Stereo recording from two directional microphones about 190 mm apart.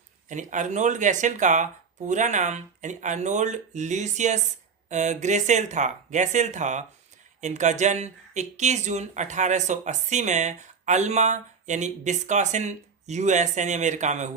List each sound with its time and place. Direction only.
0.3 s speech: 40° right (ahead or behind)